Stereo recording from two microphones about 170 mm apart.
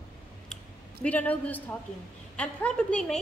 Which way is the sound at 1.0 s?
10° left (ahead or behind).